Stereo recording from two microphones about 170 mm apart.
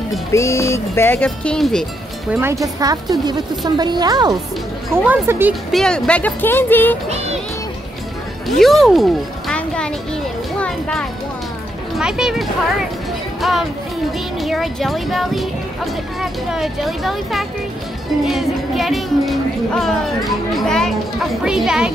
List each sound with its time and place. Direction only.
0.3 s speech: 15° left (ahead or behind)
2.4 s a woman's voice: 20° right (ahead or behind)
4.9 s speech: 10° right (ahead or behind)
5.7 s speech: 5° left (ahead or behind)
8.5 s a child's voice: centre (ahead or behind)
10.6 s a sound: 5° left (ahead or behind)
11.9 s speech: 5° right (ahead or behind)